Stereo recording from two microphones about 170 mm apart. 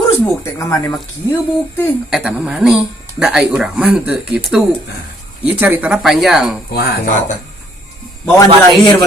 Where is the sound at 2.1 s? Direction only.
5° right (ahead or behind).